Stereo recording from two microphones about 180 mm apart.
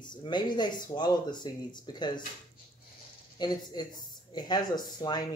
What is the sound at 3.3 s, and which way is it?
Speech, 25° left (ahead or behind).